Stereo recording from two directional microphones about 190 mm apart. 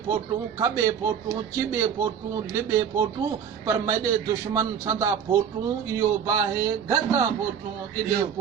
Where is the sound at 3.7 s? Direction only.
15° right (ahead or behind).